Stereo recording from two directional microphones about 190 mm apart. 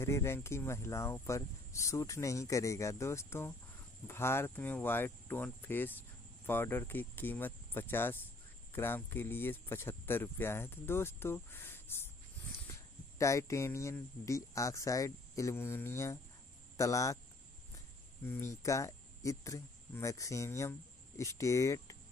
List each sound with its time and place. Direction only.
0.0 s speech: 15° left (ahead or behind)
18.2 s speech: 10° left (ahead or behind)